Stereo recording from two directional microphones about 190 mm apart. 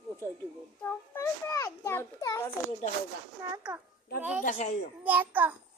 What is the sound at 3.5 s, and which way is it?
Speech, 10° right (ahead or behind).